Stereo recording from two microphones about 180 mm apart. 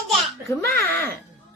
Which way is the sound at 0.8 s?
10° left (ahead or behind).